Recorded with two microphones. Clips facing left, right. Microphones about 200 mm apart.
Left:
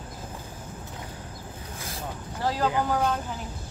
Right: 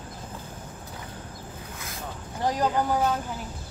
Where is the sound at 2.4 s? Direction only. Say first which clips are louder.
Right 1 dB; 15° right (ahead or behind).